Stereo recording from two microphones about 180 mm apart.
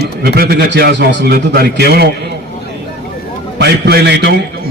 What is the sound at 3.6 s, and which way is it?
Speech, 65° right (ahead or behind).